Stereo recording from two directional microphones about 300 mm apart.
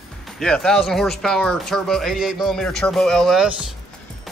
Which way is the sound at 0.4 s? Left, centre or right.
Centre.